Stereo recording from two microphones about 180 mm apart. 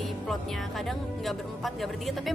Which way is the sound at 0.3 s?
Centre (ahead or behind).